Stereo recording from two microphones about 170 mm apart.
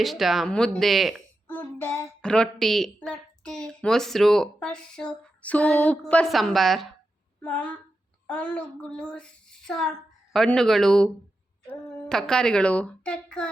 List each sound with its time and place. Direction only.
0.0 s a child's voice: centre (ahead or behind)
1.5 s a child's voice: 10° left (ahead or behind)
7.4 s a sound: 5° left (ahead or behind)
8.3 s a child's voice: 5° left (ahead or behind)